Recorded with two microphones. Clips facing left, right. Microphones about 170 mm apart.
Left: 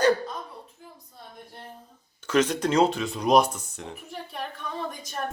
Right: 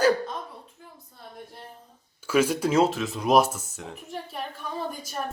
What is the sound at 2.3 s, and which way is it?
Speech, 10° right (ahead or behind).